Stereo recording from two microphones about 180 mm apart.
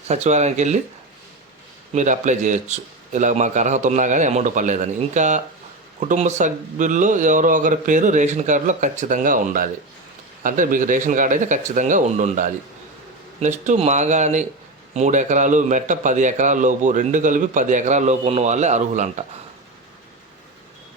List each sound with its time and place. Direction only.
0.1 s speech: 40° right (ahead or behind)
1.9 s a man's voice: 40° right (ahead or behind)